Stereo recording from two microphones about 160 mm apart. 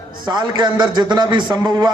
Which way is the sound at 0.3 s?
25° right (ahead or behind).